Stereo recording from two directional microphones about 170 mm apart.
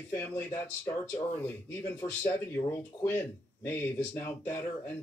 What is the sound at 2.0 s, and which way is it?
Speech, 15° left (ahead or behind).